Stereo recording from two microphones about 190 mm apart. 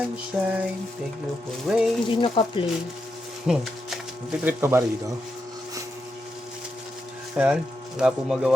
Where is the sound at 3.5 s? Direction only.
5° right (ahead or behind).